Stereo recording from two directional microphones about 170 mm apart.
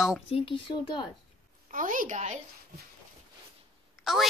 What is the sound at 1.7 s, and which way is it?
Speech, 50° right (ahead or behind).